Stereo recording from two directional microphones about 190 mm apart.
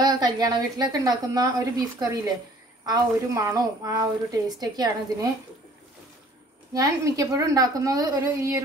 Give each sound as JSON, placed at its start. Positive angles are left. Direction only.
{"t": 0.0, "sound": "a woman's voice", "side_deg": -20}
{"t": 6.7, "sound": "a woman's voice", "side_deg": -20}